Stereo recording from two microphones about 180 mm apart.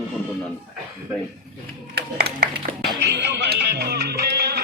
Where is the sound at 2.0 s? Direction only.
60° right (ahead or behind).